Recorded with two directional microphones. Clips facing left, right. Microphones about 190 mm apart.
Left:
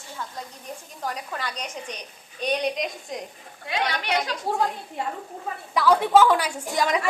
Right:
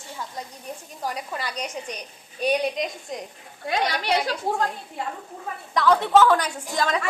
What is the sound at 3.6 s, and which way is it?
Speech, 35° right (ahead or behind).